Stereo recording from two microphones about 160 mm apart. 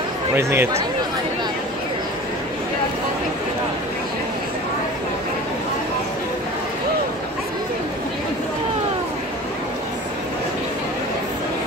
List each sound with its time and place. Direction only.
0.4 s speech: 15° right (ahead or behind)